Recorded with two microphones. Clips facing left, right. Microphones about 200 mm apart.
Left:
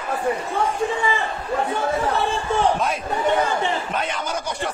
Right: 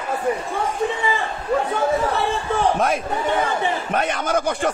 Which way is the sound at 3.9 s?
55° right (ahead or behind).